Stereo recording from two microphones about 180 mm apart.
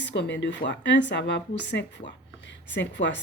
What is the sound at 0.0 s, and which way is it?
A woman's voice, 75° left (ahead or behind).